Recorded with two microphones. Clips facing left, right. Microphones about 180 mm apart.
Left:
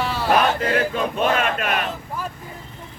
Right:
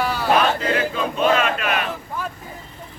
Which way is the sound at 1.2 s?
50° left (ahead or behind).